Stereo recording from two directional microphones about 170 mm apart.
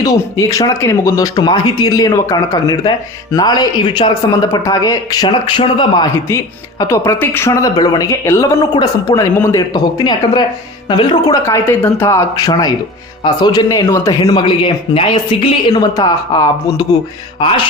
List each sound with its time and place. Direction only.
0.0 s speech: 20° left (ahead or behind)
6.7 s speech: 20° left (ahead or behind)